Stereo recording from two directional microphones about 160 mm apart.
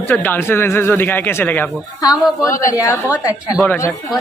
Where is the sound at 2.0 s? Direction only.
25° left (ahead or behind).